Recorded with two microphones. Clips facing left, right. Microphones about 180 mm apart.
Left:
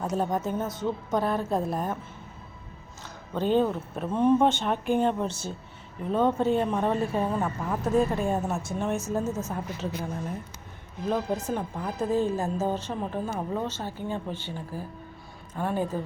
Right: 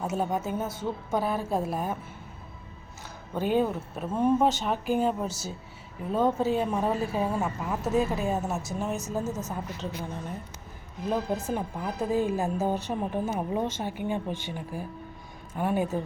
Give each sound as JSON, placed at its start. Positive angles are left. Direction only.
{"t": 0.0, "sound": "a woman's voice", "side_deg": -5}
{"t": 3.3, "sound": "a woman's voice", "side_deg": -10}